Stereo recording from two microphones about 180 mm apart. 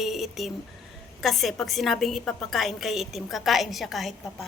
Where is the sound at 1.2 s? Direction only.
Centre (ahead or behind).